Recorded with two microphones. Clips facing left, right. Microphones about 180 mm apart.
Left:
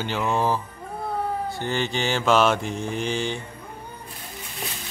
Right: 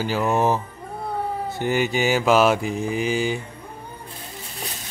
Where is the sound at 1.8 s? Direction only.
5° right (ahead or behind).